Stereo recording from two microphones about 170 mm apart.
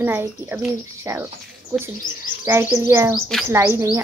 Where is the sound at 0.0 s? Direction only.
10° right (ahead or behind).